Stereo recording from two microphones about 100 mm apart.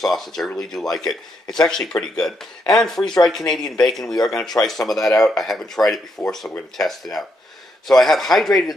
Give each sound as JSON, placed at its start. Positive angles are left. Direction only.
{"t": 0.0, "sound": "speech", "side_deg": 0}